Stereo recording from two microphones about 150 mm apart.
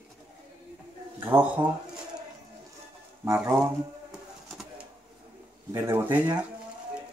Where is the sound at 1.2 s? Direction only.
15° right (ahead or behind).